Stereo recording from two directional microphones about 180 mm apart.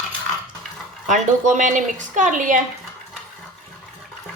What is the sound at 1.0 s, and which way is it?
A woman's voice, 45° right (ahead or behind).